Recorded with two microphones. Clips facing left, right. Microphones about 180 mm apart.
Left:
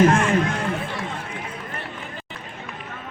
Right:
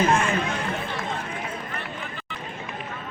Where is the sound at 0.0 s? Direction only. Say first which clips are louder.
Left 5 dB; 90° left.